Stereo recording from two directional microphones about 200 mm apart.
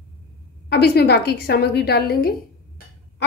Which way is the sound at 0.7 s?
55° left (ahead or behind).